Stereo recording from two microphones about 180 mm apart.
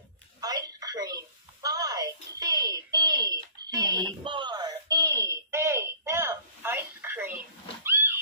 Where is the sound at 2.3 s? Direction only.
20° right (ahead or behind).